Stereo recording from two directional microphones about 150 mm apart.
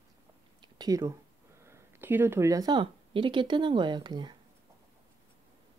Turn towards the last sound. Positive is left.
turn(degrees=-30)  # may be behind; listen again after turning